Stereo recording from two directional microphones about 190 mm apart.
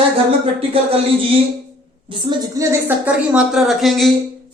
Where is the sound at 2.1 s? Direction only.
15° right (ahead or behind).